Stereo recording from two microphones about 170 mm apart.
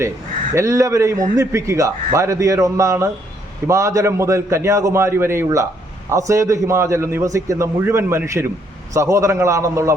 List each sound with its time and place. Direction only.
0.5 s a man's voice: 20° right (ahead or behind)